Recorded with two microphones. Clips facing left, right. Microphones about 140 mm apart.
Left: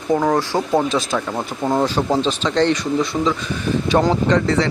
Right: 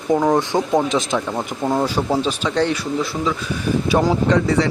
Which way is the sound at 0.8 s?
20° right (ahead or behind).